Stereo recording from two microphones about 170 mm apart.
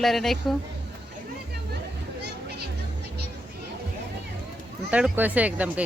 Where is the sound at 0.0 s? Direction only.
Centre (ahead or behind).